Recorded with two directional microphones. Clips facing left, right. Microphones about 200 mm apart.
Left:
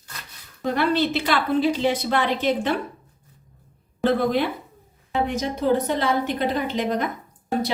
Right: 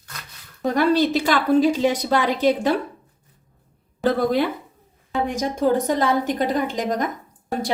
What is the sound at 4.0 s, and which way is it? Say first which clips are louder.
A woman's voice: right 1 dB; 45° right (ahead or behind).